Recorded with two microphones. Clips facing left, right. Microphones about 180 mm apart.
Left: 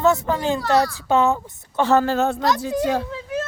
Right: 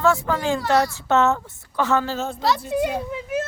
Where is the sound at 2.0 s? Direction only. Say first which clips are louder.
Left 6 dB; 60° left (ahead or behind).